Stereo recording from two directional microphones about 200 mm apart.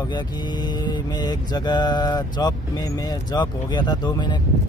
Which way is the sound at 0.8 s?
20° left (ahead or behind).